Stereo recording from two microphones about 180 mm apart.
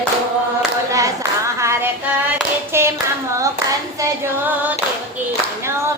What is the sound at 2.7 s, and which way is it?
Clapping, 15° right (ahead or behind).